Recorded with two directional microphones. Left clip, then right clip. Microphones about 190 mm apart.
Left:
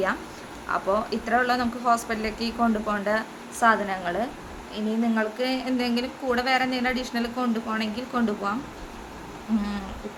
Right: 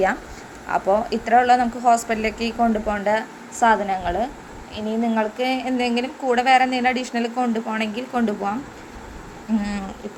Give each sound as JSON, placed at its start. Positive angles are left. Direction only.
{"t": 0.7, "sound": "a woman's voice", "side_deg": -15}